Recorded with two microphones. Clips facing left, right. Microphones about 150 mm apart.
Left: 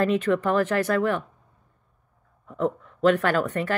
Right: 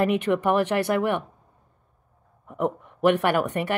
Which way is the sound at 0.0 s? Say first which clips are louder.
Even; 15° right (ahead or behind).